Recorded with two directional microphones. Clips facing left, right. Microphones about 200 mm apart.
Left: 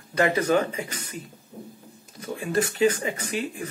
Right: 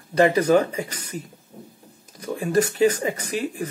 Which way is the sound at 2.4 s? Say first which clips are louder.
Right 3 dB; 40° right (ahead or behind).